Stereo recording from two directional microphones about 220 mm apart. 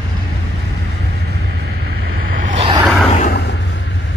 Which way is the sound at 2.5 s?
25° right (ahead or behind).